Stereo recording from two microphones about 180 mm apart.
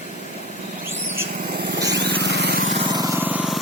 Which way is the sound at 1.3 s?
60° right (ahead or behind).